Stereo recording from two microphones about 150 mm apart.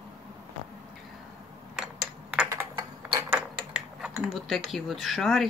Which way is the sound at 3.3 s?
10° right (ahead or behind).